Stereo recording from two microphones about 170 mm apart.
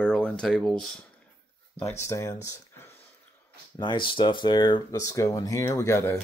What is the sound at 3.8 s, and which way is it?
Speech, 30° left (ahead or behind).